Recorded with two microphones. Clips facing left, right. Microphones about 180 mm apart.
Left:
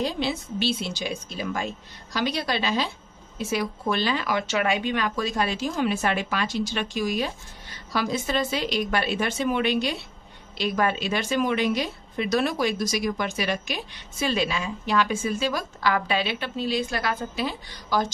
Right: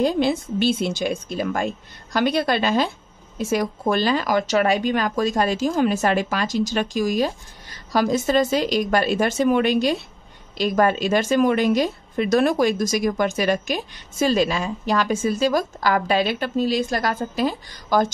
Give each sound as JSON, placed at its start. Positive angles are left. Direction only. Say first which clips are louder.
{"t": 0.0, "sound": "a woman's voice", "louder": "right 7 dB", "side_deg": -50}